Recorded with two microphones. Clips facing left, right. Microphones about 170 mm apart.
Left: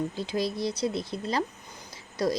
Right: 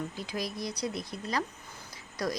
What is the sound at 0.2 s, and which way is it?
A woman's voice, 30° left (ahead or behind).